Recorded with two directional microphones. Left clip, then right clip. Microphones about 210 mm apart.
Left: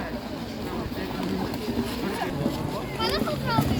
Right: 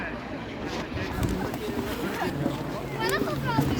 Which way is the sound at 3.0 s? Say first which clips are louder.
Even; 45° left (ahead or behind).